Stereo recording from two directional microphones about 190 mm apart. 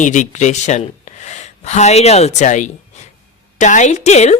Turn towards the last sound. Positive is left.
turn(degrees=35)  # may be behind; listen again after turning